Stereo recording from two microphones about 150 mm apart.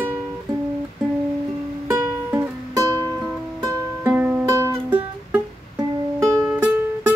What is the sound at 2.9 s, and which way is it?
Music, 25° right (ahead or behind).